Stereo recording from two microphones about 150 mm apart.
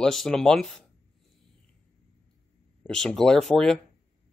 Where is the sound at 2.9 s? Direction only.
5° left (ahead or behind).